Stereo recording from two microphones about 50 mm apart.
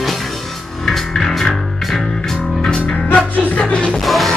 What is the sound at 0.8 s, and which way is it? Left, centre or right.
Music, centre.